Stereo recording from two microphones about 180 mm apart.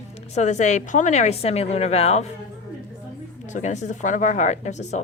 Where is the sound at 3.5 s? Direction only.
40° left (ahead or behind).